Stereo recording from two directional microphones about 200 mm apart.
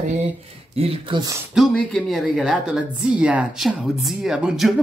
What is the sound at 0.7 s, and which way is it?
Speech, 25° right (ahead or behind).